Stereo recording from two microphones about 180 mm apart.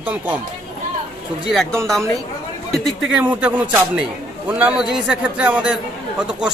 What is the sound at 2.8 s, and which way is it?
Speech, centre (ahead or behind).